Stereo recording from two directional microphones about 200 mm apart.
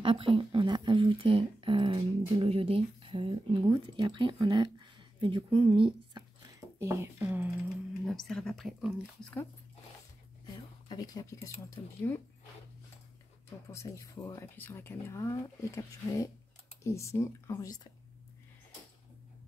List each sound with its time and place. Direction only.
0.0 s speech: 25° right (ahead or behind)
6.8 s speech: 15° right (ahead or behind)
8.0 s speech: centre (ahead or behind)
10.4 s speech: 20° left (ahead or behind)
13.7 s speech: 15° left (ahead or behind)